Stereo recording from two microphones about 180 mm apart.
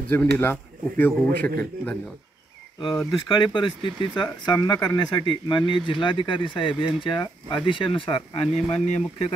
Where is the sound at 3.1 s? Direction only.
25° left (ahead or behind).